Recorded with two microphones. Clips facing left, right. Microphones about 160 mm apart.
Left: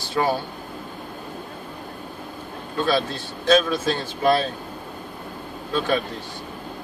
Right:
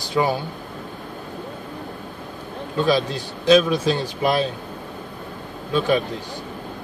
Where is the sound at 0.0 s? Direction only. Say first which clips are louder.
Right 2 dB; 15° right (ahead or behind).